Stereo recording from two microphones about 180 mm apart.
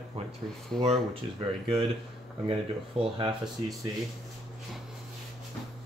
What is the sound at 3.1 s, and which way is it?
Speech, 25° right (ahead or behind).